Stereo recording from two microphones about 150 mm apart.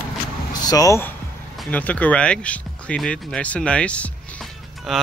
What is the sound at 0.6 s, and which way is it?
Speech, 25° left (ahead or behind).